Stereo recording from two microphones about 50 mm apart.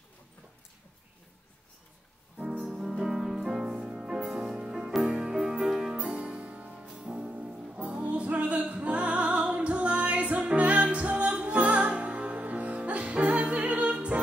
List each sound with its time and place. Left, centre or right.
2.6 s music: centre